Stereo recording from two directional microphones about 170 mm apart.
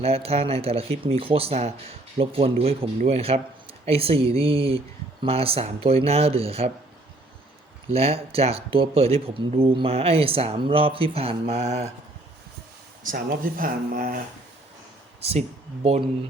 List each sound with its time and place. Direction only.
0.0 s speech: 35° right (ahead or behind)
7.9 s speech: 35° right (ahead or behind)
13.0 s speech: 55° right (ahead or behind)
15.2 s speech: 35° right (ahead or behind)